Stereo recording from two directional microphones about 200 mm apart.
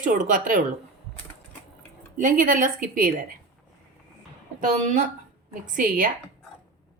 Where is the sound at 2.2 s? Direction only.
45° right (ahead or behind).